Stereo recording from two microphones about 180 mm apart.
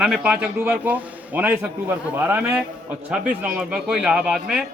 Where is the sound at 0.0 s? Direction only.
5° right (ahead or behind).